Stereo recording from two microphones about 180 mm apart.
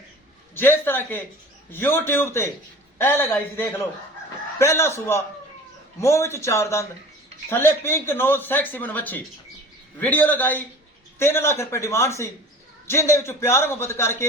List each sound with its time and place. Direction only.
0.5 s speech: 10° left (ahead or behind)